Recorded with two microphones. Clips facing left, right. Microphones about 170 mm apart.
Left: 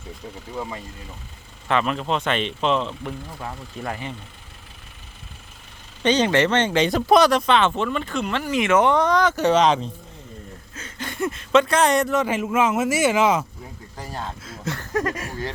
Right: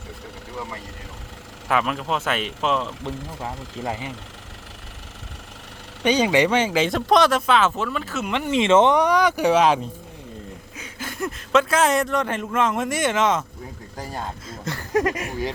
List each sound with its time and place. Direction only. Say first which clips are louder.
1.6 s speech: left 1 dB; 5° right (ahead or behind)
3.8 s speech: right 1 dB; 15° right (ahead or behind)
6.0 s speech: even; 10° right (ahead or behind)
8.3 s speech: right 3 dB; 20° right (ahead or behind); by 13.4 s 10° left (ahead or behind)
14.4 s speech: left 1 dB; 5° left (ahead or behind)
14.9 s speech: right 4 dB; 20° right (ahead or behind)